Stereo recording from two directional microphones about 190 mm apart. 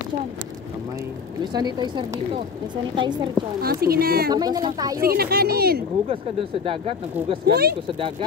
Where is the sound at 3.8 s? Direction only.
50° right (ahead or behind).